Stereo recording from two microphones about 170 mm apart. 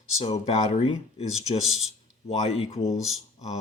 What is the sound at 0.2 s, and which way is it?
Speech, 35° left (ahead or behind).